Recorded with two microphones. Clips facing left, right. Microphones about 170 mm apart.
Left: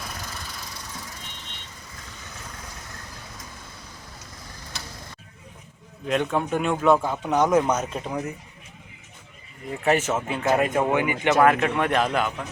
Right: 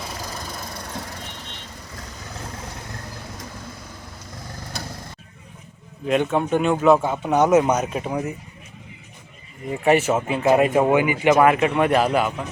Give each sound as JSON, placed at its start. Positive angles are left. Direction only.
{"t": 0.2, "sound": "vehicle", "side_deg": -40}
{"t": 6.1, "sound": "speech", "side_deg": -5}
{"t": 9.6, "sound": "speech", "side_deg": -10}